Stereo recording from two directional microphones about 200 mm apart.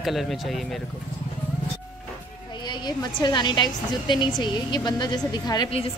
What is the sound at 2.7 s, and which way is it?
A woman's voice, 20° left (ahead or behind).